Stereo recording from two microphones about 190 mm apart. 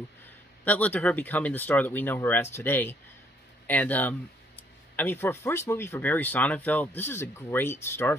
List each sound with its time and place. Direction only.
0.7 s speech: 10° left (ahead or behind)